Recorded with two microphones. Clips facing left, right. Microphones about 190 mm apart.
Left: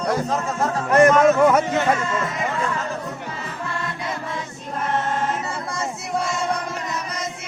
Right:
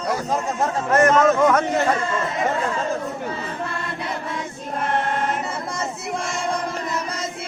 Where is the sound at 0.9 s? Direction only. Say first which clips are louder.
Left 2 dB; 10° left (ahead or behind).